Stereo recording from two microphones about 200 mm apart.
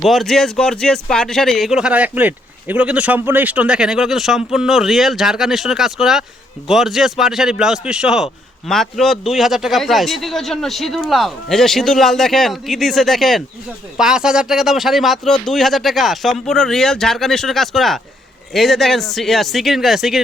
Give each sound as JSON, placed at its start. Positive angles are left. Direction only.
{"t": 0.0, "sound": "speech", "side_deg": 0}